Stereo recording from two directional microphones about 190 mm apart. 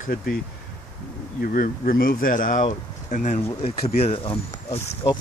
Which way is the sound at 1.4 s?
45° left (ahead or behind).